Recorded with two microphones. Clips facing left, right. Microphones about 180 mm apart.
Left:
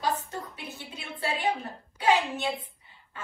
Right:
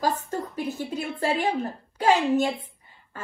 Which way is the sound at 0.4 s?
35° right (ahead or behind).